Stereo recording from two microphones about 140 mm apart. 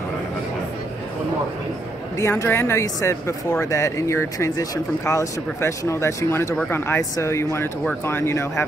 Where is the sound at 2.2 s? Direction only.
15° left (ahead or behind).